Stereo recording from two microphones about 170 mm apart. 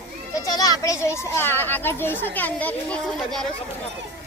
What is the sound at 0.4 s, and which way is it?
A child's voice, 20° left (ahead or behind).